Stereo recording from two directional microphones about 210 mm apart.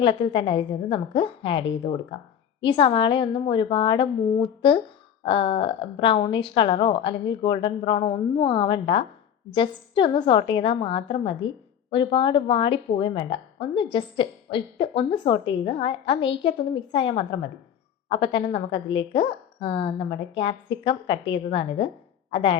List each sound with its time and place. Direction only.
0.0 s a woman's voice: 25° left (ahead or behind)